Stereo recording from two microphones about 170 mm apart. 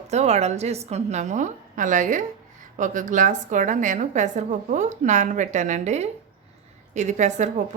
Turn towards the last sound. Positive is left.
turn(degrees=-45)  # may be behind; listen again after turning